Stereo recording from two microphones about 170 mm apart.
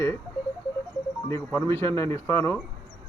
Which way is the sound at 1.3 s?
15° left (ahead or behind).